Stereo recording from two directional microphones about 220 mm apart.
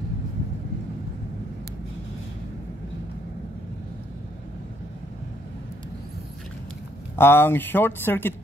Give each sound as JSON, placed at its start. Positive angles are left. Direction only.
{"t": 7.2, "sound": "speech", "side_deg": 10}